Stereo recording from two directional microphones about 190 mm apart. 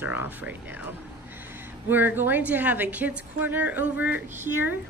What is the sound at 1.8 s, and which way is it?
A woman's voice, 10° right (ahead or behind).